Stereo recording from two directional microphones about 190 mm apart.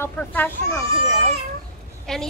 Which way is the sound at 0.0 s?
10° left (ahead or behind).